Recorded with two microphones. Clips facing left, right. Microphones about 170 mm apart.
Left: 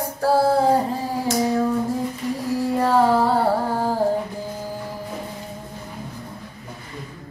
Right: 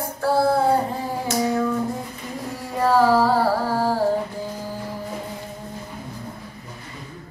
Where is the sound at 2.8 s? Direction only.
25° left (ahead or behind).